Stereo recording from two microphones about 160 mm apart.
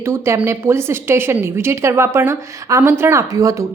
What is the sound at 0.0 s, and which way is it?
A woman's voice, 15° right (ahead or behind).